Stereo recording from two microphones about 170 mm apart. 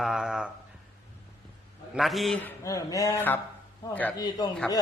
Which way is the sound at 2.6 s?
20° left (ahead or behind).